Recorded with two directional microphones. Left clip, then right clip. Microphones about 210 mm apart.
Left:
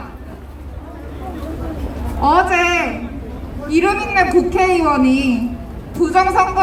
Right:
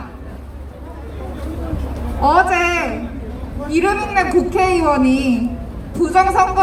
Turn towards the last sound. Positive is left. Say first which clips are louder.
# even
turn(degrees=15)  # may be behind; listen again after turning